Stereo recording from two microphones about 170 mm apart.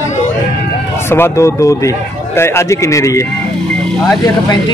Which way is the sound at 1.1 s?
15° left (ahead or behind).